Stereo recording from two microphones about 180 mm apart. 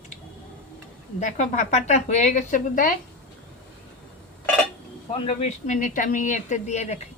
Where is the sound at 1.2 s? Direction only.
40° left (ahead or behind).